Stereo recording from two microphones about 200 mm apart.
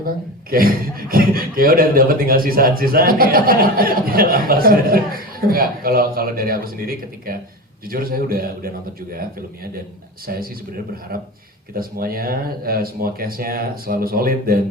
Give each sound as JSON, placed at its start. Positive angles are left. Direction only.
{"t": 0.5, "sound": "speech", "side_deg": -45}
{"t": 10.2, "sound": "speech", "side_deg": -50}
{"t": 11.7, "sound": "speech", "side_deg": -45}